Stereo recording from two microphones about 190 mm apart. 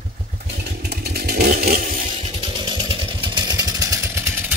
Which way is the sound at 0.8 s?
60° right (ahead or behind).